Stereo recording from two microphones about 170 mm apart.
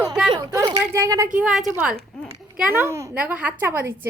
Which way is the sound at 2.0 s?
5° left (ahead or behind).